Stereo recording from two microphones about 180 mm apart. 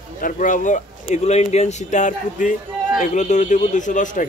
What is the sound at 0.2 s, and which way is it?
Speech, 45° left (ahead or behind).